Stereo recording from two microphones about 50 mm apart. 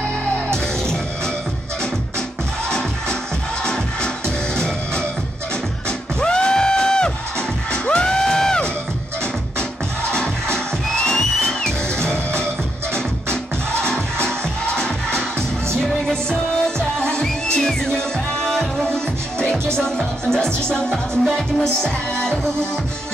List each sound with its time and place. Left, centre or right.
3.6 s music: centre
10.1 s music: centre
17.0 s music: centre